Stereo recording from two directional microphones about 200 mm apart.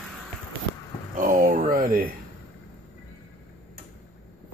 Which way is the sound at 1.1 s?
40° right (ahead or behind).